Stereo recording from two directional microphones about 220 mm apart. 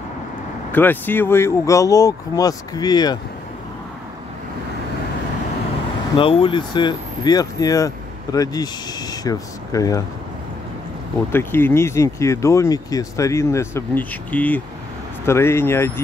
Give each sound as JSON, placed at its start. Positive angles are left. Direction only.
{"t": 0.7, "sound": "speech", "side_deg": 10}
{"t": 6.1, "sound": "speech", "side_deg": 25}
{"t": 11.3, "sound": "speech", "side_deg": 10}